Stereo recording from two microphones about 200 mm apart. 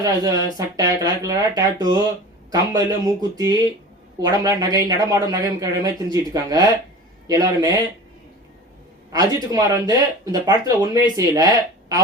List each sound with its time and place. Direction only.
0.0 s speech: 20° right (ahead or behind)
9.1 s speech: 20° right (ahead or behind)